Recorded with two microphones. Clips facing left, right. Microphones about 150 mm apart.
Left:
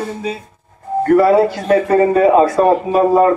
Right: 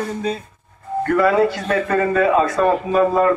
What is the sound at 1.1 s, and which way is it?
A man's voice, 35° left (ahead or behind).